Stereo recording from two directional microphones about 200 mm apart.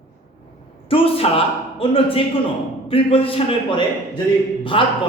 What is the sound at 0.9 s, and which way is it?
Speech, 30° left (ahead or behind).